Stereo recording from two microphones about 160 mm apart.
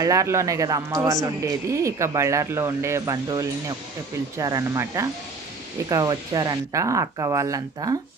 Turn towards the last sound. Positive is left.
turn(degrees=-20)  # may be behind; listen again after turning